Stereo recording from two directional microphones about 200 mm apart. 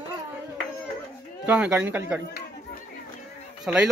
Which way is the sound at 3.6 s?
5° right (ahead or behind).